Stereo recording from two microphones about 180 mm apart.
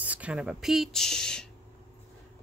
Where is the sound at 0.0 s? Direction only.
10° right (ahead or behind).